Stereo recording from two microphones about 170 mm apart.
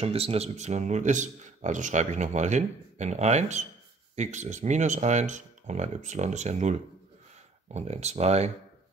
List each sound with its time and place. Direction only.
0.0 s speech: 35° right (ahead or behind)